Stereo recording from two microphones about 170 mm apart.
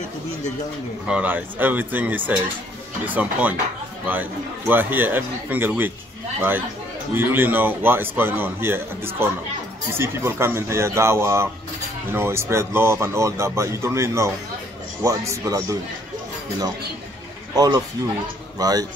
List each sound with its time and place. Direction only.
1.0 s speech: 10° right (ahead or behind)
7.2 s speech: 10° right (ahead or behind)
17.6 s speech: 20° right (ahead or behind)